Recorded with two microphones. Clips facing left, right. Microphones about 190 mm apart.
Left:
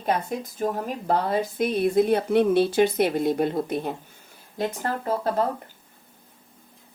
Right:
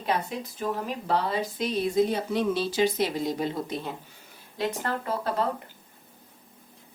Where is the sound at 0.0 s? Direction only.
50° left (ahead or behind).